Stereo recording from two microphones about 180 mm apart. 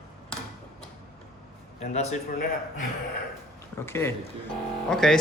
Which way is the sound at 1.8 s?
35° left (ahead or behind).